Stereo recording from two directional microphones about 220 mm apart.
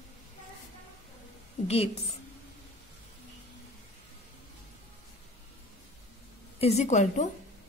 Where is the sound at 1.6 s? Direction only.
30° left (ahead or behind).